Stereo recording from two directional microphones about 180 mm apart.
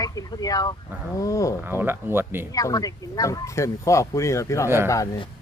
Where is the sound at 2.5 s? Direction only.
20° left (ahead or behind).